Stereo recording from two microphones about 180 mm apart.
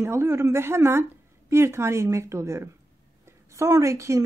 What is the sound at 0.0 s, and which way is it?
A woman's voice, 15° right (ahead or behind).